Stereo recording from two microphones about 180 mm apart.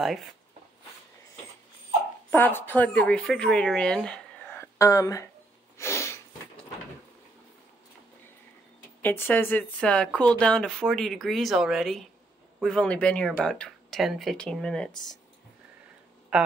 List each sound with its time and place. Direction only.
2.3 s speech: 10° left (ahead or behind)
5.8 s a sound: 15° left (ahead or behind)
9.0 s speech: 10° left (ahead or behind)
16.3 s a woman's voice: 5° right (ahead or behind)